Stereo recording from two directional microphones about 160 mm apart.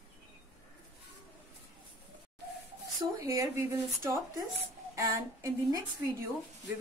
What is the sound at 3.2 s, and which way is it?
A woman's voice, 20° right (ahead or behind).